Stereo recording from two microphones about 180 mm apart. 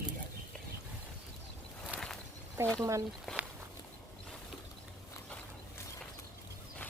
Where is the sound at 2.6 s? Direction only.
15° right (ahead or behind).